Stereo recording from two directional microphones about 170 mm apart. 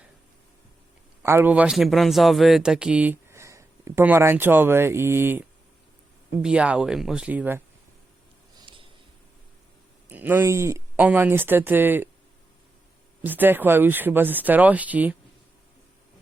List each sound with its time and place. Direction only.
1.2 s speech: 15° right (ahead or behind)
6.4 s speech: 5° right (ahead or behind)
8.6 s a sound: 30° right (ahead or behind)
10.1 s speech: 10° right (ahead or behind)
13.2 s speech: 10° right (ahead or behind)